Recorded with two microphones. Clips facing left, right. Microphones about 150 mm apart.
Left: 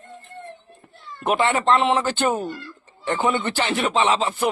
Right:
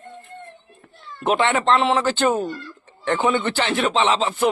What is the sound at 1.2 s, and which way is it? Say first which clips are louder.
Speech: right 1 dB; 5° left (ahead or behind).